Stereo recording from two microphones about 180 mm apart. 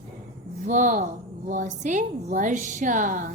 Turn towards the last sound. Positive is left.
turn(degrees=-45)  # may be behind; listen again after turning